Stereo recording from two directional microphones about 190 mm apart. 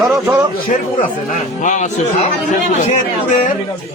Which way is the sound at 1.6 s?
40° left (ahead or behind).